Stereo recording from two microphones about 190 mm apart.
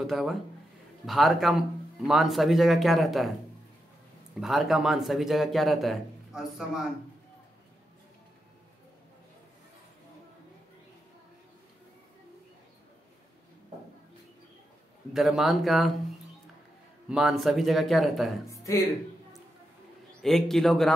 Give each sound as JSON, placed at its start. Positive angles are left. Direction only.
{"t": 0.0, "sound": "speech", "side_deg": 0}
{"t": 4.4, "sound": "speech", "side_deg": 0}
{"t": 15.1, "sound": "speech", "side_deg": 0}
{"t": 17.1, "sound": "speech", "side_deg": 0}
{"t": 18.6, "sound": "speech", "side_deg": 15}
{"t": 20.2, "sound": "speech", "side_deg": 0}